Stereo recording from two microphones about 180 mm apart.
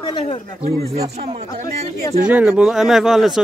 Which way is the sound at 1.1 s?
40° right (ahead or behind).